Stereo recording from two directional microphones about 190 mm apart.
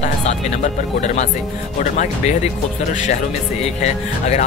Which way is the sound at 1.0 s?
40° left (ahead or behind).